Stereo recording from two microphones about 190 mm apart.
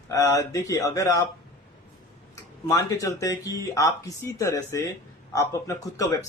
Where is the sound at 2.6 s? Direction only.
20° left (ahead or behind).